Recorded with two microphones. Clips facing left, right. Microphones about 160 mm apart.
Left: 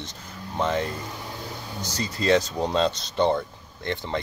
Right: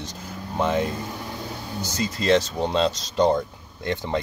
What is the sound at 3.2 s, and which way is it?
Speech, 15° right (ahead or behind).